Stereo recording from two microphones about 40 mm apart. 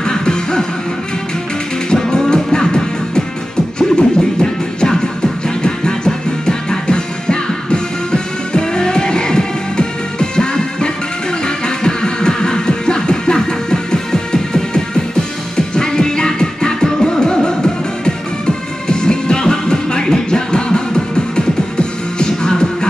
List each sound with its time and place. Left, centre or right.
0.0 s music: centre
1.9 s music: centre
18.9 s music: left